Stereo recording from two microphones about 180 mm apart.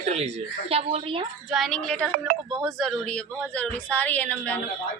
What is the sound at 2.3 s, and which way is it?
Speech, 50° right (ahead or behind).